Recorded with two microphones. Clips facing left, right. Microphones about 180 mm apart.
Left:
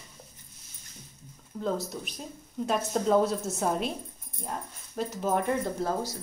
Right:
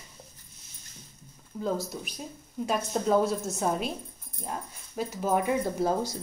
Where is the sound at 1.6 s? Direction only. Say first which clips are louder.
Even; centre (ahead or behind).